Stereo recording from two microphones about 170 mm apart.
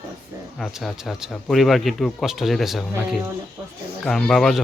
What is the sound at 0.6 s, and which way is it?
Speech, centre (ahead or behind).